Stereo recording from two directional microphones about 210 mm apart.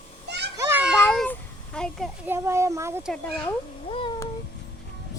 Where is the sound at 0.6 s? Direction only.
10° right (ahead or behind).